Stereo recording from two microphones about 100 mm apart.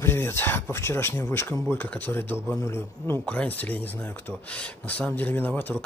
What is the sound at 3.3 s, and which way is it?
Speech, 15° left (ahead or behind).